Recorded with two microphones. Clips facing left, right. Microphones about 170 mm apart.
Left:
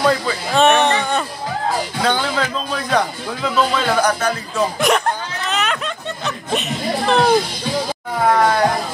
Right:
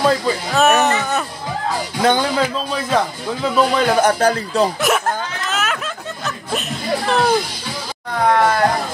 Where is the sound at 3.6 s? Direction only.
15° right (ahead or behind).